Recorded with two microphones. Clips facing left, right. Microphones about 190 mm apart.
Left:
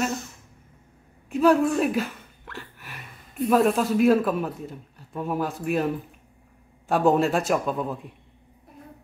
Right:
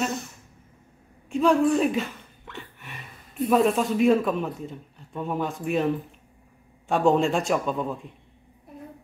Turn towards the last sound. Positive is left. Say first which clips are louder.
# even
turn(degrees=5)  # may be behind; listen again after turning